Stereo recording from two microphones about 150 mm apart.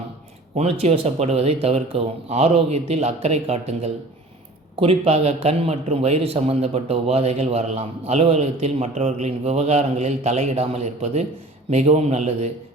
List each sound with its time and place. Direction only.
0.5 s a man's voice: 45° right (ahead or behind)